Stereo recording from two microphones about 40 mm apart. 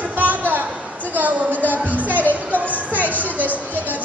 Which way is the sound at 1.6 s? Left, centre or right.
Right.